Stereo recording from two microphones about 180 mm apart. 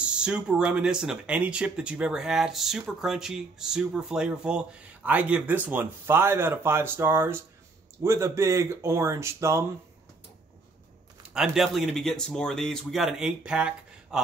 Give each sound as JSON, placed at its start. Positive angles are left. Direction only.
{"t": 0.0, "sound": "speech", "side_deg": -5}
{"t": 11.2, "sound": "speech", "side_deg": -5}